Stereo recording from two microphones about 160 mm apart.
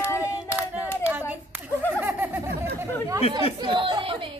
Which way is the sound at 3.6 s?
30° right (ahead or behind).